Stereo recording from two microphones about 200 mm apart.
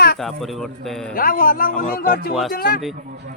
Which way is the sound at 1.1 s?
45° left (ahead or behind).